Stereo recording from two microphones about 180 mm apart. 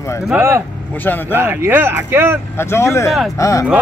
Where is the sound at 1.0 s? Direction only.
10° left (ahead or behind).